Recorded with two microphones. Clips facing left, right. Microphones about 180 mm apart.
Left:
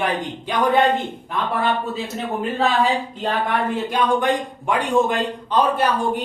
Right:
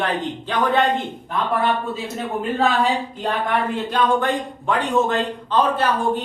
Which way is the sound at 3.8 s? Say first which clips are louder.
Left 1 dB; 10° left (ahead or behind).